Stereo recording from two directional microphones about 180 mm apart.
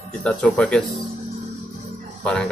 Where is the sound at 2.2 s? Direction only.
5° left (ahead or behind).